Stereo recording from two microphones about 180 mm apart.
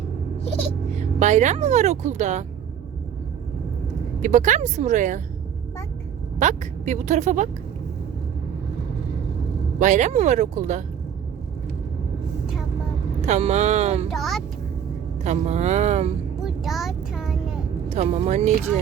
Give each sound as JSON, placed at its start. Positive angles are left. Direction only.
{"t": 0.9, "sound": "speech", "side_deg": -40}
{"t": 4.2, "sound": "speech", "side_deg": -45}
{"t": 6.4, "sound": "speech", "side_deg": -40}
{"t": 9.7, "sound": "speech", "side_deg": -45}
{"t": 13.2, "sound": "speech", "side_deg": -40}
{"t": 14.1, "sound": "speech", "side_deg": 0}
{"t": 15.2, "sound": "speech", "side_deg": -40}
{"t": 16.4, "sound": "vehicle", "side_deg": 0}
{"t": 17.8, "sound": "speech", "side_deg": -40}